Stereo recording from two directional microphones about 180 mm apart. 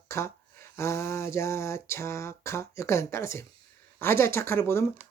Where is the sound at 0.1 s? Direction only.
15° left (ahead or behind).